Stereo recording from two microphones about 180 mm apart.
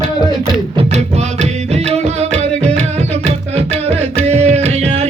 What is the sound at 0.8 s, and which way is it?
Music, 35° right (ahead or behind).